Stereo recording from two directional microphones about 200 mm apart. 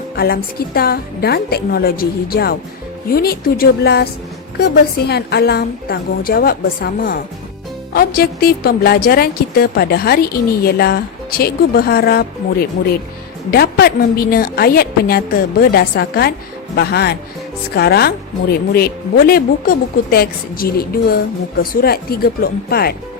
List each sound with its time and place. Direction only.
0.2 s a woman's voice: 50° left (ahead or behind)